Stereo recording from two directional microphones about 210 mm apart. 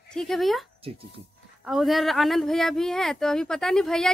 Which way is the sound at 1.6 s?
Centre (ahead or behind).